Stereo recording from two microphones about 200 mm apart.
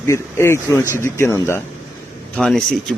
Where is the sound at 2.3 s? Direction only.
Centre (ahead or behind).